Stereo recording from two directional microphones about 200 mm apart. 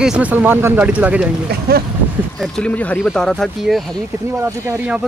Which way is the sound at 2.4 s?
5° left (ahead or behind).